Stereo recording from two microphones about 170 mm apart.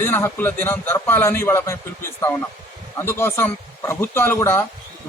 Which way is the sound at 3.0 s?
15° left (ahead or behind).